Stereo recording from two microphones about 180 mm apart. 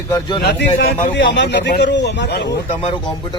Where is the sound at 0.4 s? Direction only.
65° left (ahead or behind).